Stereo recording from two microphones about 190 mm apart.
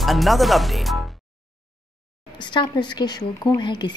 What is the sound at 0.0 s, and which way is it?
Speech, centre (ahead or behind).